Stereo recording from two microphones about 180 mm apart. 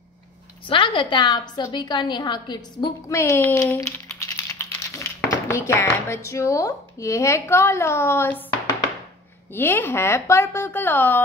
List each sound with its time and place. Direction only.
0.7 s a woman's voice: 25° left (ahead or behind)
9.5 s speech: 10° left (ahead or behind)